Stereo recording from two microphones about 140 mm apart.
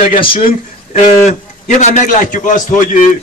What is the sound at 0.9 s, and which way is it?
A man's voice, 55° left (ahead or behind).